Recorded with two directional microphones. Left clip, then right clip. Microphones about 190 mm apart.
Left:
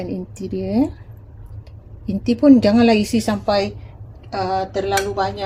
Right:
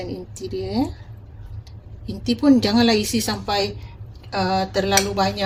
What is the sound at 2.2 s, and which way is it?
Speech, 40° left (ahead or behind).